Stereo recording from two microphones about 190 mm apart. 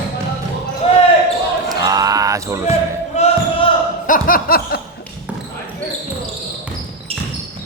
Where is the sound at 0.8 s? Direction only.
30° left (ahead or behind).